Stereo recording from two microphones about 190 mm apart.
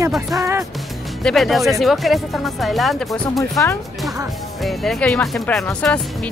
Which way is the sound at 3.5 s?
15° left (ahead or behind).